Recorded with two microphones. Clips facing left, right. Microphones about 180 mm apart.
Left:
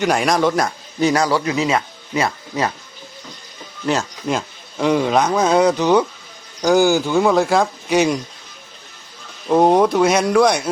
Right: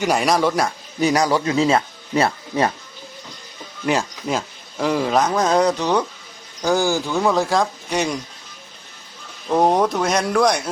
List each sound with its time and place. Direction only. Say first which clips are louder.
0.0 s speech: left 1 dB; 5° right (ahead or behind)
1.5 s speech: right 2 dB; 30° right (ahead or behind)
4.3 s speech: left 2 dB; centre (ahead or behind)
9.5 s speech: left 4 dB; 5° left (ahead or behind)